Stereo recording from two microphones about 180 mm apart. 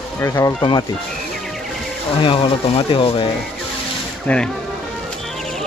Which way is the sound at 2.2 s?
30° left (ahead or behind).